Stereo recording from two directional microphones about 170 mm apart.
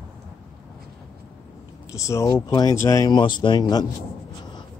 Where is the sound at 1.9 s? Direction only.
15° left (ahead or behind).